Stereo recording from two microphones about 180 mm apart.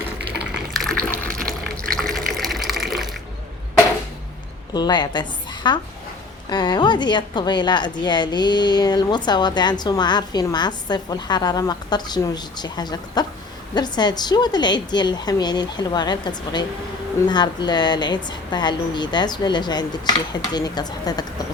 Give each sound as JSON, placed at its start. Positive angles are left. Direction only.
{"t": 0.5, "sound": "water", "side_deg": 0}
{"t": 4.7, "sound": "a woman's voice", "side_deg": 25}